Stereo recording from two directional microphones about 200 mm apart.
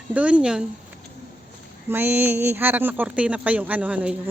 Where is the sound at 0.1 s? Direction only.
5° right (ahead or behind).